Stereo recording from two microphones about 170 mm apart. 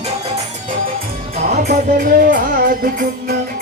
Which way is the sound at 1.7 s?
50° right (ahead or behind).